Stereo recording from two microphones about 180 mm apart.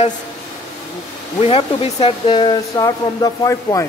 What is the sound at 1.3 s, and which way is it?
Speech, 30° left (ahead or behind).